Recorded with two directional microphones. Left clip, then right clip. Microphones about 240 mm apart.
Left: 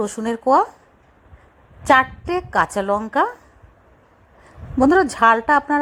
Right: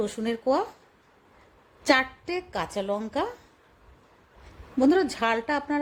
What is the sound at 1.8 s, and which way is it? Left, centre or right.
A woman's voice, centre.